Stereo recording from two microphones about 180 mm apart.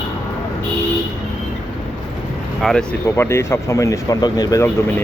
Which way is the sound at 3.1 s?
15° left (ahead or behind).